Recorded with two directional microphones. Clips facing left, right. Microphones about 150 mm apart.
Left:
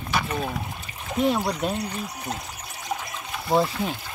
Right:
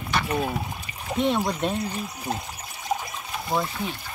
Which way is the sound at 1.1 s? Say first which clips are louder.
Left 1 dB; 5° left (ahead or behind).